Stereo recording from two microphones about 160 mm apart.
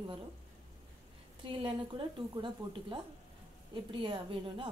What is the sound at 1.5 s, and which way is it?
A woman's voice, 30° right (ahead or behind).